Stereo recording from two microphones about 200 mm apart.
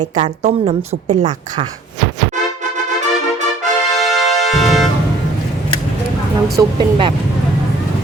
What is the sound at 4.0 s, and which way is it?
Music, centre (ahead or behind).